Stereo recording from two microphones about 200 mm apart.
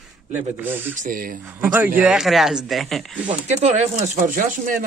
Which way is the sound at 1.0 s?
45° right (ahead or behind).